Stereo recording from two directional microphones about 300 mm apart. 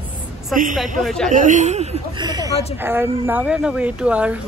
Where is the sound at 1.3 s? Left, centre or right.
Right.